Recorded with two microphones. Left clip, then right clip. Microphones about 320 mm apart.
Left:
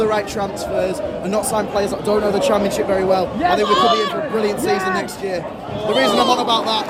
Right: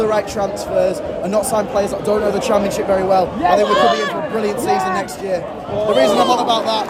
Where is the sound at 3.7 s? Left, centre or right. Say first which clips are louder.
Right 1 dB; right.